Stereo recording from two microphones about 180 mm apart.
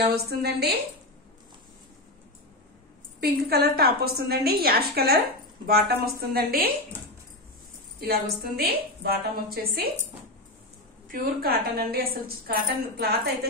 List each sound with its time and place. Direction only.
0.1 s a woman's voice: 65° right (ahead or behind)
3.2 s a woman's voice: 60° right (ahead or behind)
8.0 s a woman's voice: 55° right (ahead or behind)
11.1 s a woman's voice: 55° right (ahead or behind)